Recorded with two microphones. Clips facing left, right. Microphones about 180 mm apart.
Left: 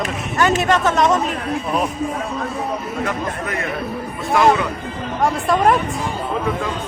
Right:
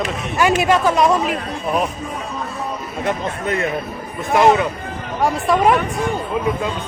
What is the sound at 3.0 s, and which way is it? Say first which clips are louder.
Speech: right 6 dB; 25° right (ahead or behind).